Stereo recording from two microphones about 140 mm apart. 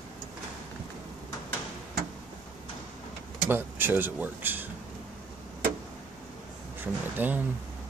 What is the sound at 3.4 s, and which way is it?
Speech, 15° right (ahead or behind).